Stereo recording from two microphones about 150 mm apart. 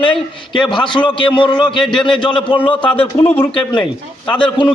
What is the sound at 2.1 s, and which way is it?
A man's voice, 30° left (ahead or behind).